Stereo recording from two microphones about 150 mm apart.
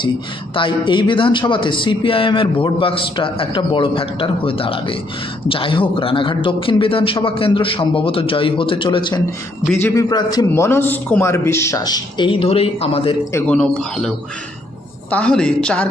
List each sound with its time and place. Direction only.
0.5 s a man's voice: 35° left (ahead or behind)
9.7 s a man's voice: 15° left (ahead or behind)
10.5 s a man's voice: 15° left (ahead or behind); by 13.1 s 40° left (ahead or behind)
13.5 s speech: 5° left (ahead or behind)
15.1 s a woman's voice: 5° left (ahead or behind)